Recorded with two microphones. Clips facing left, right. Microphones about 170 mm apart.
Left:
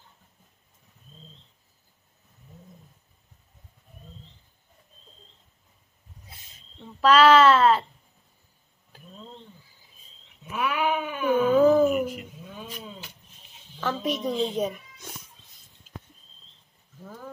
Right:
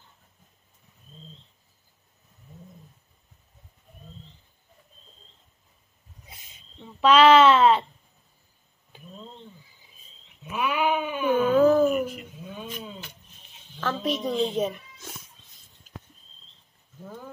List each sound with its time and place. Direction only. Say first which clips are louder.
6.8 s a child's voice: right 1 dB; centre (ahead or behind)
10.5 s cat: right 1 dB; centre (ahead or behind)
13.7 s a woman's voice: even; 5° left (ahead or behind)